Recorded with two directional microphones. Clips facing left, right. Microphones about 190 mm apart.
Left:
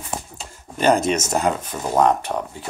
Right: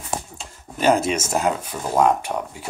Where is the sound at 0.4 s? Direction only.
5° right (ahead or behind).